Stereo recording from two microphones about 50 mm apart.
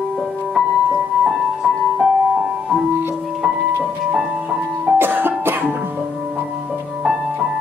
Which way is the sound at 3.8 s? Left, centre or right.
Centre.